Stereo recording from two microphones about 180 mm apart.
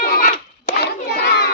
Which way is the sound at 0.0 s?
55° left (ahead or behind).